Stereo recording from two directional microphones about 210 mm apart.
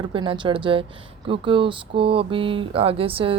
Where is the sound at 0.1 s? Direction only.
25° right (ahead or behind).